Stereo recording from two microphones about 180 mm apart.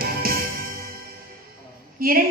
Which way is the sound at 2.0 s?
55° right (ahead or behind).